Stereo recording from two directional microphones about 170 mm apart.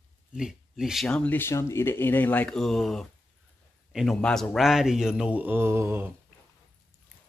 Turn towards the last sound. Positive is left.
turn(degrees=-15)  # may be behind; listen again after turning